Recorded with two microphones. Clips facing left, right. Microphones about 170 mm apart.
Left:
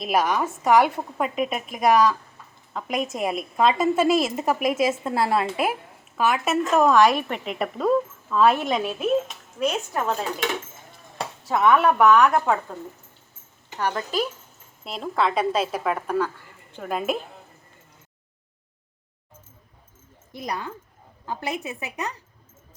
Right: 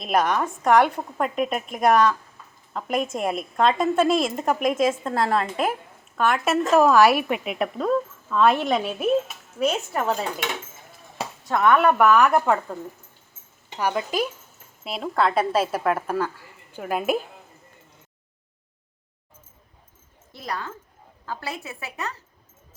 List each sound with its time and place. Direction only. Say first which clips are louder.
0.0 s a woman's voice: even; centre (ahead or behind)
11.4 s a woman's voice: even; 5° left (ahead or behind)
13.7 s speech: right 1 dB; 15° right (ahead or behind)
14.8 s a woman's voice: right 1 dB; centre (ahead or behind)
20.3 s a woman's voice: left 1 dB; 15° left (ahead or behind)